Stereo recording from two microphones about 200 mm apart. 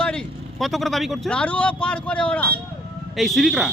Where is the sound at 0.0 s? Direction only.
5° left (ahead or behind).